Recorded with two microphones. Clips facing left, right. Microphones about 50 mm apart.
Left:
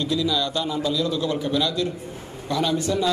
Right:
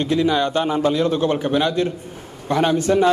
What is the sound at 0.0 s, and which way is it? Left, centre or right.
A man's voice, right.